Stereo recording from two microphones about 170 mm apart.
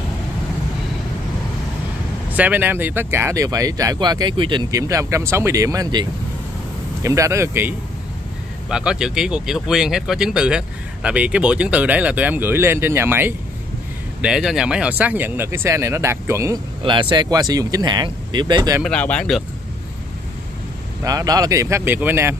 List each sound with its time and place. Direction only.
2.3 s speech: 10° right (ahead or behind)
8.6 s speech: 5° right (ahead or behind)
14.2 s speech: 5° right (ahead or behind)
16.8 s speech: 30° right (ahead or behind)
18.8 s speech: 5° left (ahead or behind)
21.0 s speech: 20° right (ahead or behind)